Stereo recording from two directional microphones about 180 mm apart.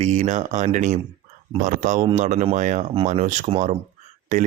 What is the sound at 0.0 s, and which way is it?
Speech, 40° right (ahead or behind).